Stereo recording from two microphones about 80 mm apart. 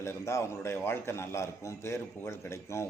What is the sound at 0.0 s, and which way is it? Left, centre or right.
A man's voice, left.